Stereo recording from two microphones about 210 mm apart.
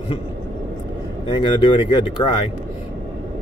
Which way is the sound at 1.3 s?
20° left (ahead or behind).